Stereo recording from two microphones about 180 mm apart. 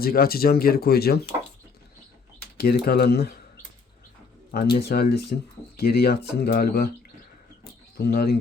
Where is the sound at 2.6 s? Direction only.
60° left (ahead or behind).